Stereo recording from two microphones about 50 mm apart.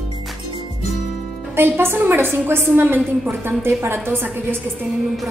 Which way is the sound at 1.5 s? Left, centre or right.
Right.